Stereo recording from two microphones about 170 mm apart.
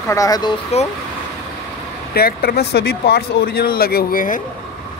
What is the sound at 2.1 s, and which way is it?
Speech, 65° left (ahead or behind).